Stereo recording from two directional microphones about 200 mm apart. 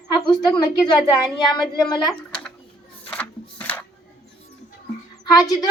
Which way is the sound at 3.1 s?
5° left (ahead or behind).